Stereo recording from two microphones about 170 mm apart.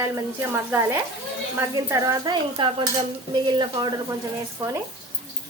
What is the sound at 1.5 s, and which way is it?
Speech, 20° right (ahead or behind).